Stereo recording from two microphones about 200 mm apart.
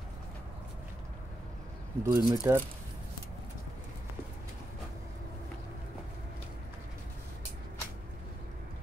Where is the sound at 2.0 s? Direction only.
15° right (ahead or behind).